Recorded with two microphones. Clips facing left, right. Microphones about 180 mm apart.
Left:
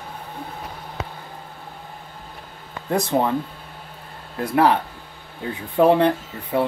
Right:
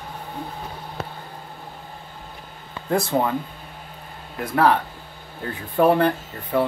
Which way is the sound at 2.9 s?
20° left (ahead or behind).